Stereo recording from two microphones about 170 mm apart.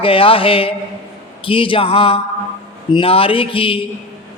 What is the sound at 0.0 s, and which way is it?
Speech, 30° left (ahead or behind).